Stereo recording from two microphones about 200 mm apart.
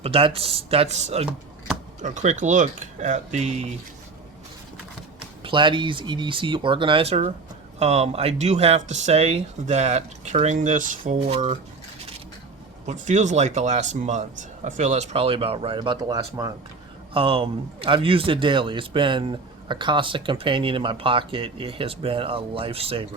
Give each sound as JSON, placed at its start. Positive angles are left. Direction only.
{"t": 0.0, "sound": "speech", "side_deg": -25}
{"t": 5.4, "sound": "speech", "side_deg": -25}
{"t": 12.8, "sound": "speech", "side_deg": -35}